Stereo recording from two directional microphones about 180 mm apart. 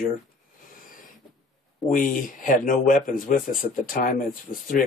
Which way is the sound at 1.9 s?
50° left (ahead or behind).